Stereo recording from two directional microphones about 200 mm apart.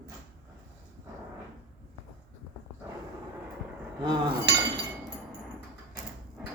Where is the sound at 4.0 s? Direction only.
20° right (ahead or behind).